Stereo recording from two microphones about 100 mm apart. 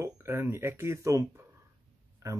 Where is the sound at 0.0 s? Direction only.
25° right (ahead or behind).